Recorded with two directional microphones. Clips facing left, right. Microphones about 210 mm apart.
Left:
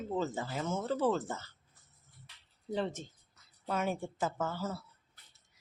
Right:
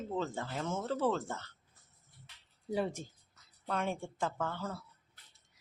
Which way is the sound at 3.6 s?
5° left (ahead or behind).